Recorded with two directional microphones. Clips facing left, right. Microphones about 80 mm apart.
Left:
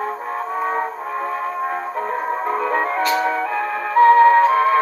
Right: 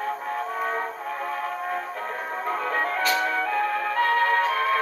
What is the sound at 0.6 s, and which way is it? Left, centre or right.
Music, left.